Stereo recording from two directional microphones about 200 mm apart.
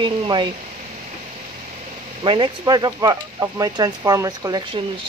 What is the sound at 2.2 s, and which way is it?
Speech, 25° right (ahead or behind).